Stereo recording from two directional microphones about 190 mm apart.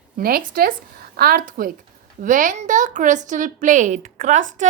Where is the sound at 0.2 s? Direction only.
50° right (ahead or behind).